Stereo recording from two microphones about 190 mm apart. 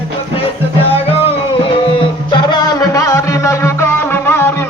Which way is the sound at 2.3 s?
20° left (ahead or behind).